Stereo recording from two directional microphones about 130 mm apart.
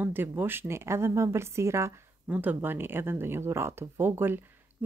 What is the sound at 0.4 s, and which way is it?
Speech, 15° right (ahead or behind).